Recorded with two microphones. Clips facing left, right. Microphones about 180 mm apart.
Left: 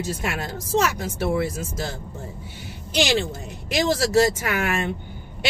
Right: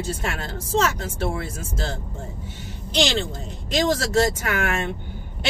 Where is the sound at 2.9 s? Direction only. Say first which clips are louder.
Left 1 dB; 10° left (ahead or behind).